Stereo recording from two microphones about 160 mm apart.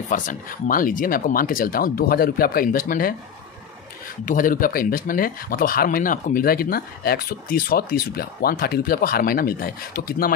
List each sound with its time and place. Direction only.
0.1 s speech: 60° left (ahead or behind)
4.3 s speech: 60° left (ahead or behind)